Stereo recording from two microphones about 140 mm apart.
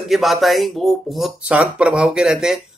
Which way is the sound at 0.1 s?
Centre (ahead or behind).